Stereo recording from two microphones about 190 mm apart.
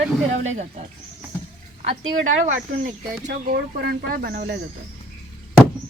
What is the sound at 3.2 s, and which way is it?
Speech, 50° right (ahead or behind).